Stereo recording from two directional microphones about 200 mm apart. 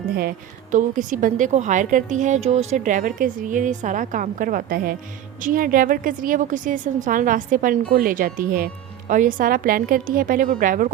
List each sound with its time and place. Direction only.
0.2 s a woman's voice: 45° right (ahead or behind)